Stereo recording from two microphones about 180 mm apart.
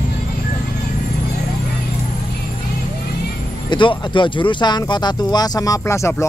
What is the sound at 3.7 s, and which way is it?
Speech, 25° left (ahead or behind).